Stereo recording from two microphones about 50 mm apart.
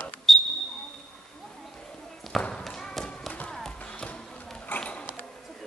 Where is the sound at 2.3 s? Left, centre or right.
Centre.